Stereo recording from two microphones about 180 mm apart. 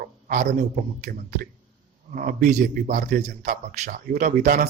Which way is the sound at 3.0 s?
55° right (ahead or behind).